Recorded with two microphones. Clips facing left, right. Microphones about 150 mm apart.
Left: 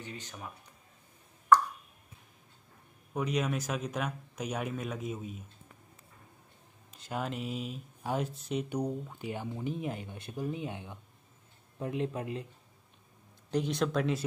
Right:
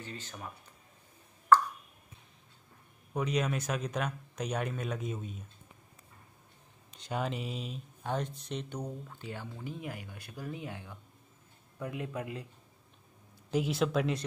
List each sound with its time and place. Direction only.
0.0 s speech: 15° left (ahead or behind)
3.1 s speech: centre (ahead or behind)
6.9 s speech: 5° left (ahead or behind); by 12.4 s 25° left (ahead or behind)
13.5 s speech: 5° right (ahead or behind)